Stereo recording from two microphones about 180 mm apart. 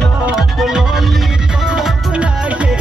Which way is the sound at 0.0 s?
Centre (ahead or behind).